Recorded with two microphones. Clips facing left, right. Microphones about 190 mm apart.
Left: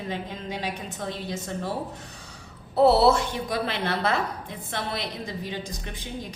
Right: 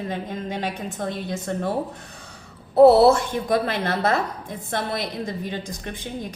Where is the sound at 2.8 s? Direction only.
50° right (ahead or behind).